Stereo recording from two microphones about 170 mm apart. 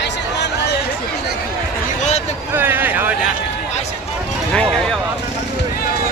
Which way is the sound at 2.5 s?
10° right (ahead or behind).